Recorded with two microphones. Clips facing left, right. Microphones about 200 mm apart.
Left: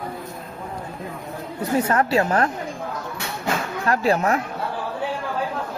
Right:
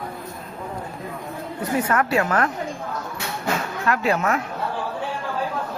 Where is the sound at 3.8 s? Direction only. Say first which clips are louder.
Left 2 dB; 35° left (ahead or behind).